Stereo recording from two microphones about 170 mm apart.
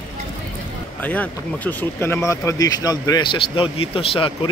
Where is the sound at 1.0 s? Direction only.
10° left (ahead or behind).